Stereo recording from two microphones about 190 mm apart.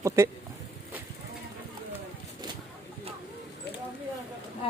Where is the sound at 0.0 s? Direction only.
15° right (ahead or behind).